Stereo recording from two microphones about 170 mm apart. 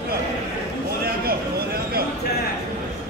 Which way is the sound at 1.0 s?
65° right (ahead or behind).